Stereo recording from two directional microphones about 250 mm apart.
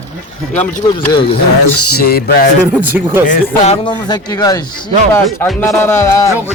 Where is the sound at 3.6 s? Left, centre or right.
Left.